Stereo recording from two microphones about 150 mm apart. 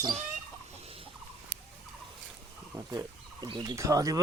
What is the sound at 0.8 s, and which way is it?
Turkey, 40° right (ahead or behind).